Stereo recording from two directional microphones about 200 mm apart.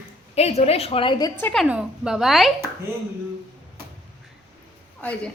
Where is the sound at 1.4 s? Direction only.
10° left (ahead or behind).